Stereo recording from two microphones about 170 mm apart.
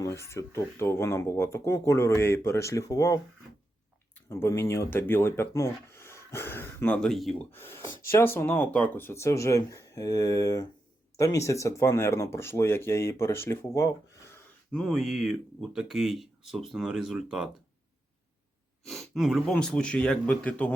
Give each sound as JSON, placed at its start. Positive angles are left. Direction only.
{"t": 0.0, "sound": "speech", "side_deg": 15}
{"t": 4.3, "sound": "speech", "side_deg": 15}
{"t": 7.5, "sound": "speech", "side_deg": 15}
{"t": 14.7, "sound": "speech", "side_deg": 0}
{"t": 18.9, "sound": "speech", "side_deg": 0}